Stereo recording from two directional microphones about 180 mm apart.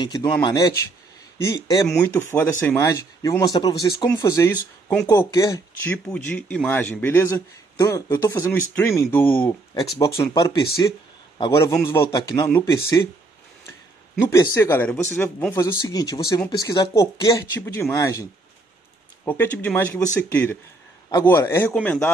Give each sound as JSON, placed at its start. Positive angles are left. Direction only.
{"t": 0.0, "sound": "speech", "side_deg": 25}
{"t": 6.0, "sound": "speech", "side_deg": 5}
{"t": 14.3, "sound": "speech", "side_deg": 15}
{"t": 15.6, "sound": "speech", "side_deg": 20}
{"t": 19.2, "sound": "speech", "side_deg": 10}